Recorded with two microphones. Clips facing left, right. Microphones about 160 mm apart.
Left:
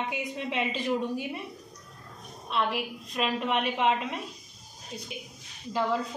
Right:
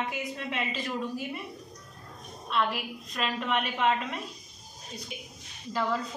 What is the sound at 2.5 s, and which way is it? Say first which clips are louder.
A woman's voice: even; 20° left (ahead or behind).